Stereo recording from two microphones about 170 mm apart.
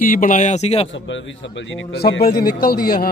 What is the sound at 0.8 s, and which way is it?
A man's voice, 90° left.